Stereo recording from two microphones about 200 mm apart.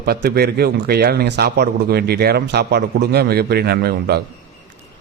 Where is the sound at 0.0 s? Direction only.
50° right (ahead or behind).